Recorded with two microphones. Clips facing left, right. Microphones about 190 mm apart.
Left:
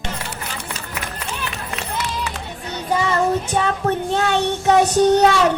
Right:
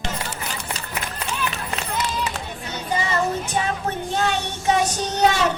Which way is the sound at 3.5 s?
60° left (ahead or behind).